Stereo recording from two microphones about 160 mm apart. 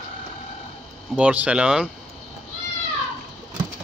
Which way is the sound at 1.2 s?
5° right (ahead or behind).